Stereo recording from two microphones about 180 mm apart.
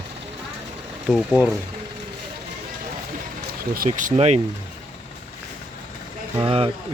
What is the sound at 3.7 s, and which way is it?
Speech, 50° right (ahead or behind).